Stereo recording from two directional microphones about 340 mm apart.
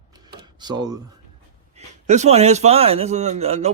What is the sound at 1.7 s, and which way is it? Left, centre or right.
A man's voice, centre.